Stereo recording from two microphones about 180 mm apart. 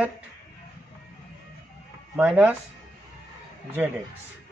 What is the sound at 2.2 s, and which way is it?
Speech, 5° right (ahead or behind).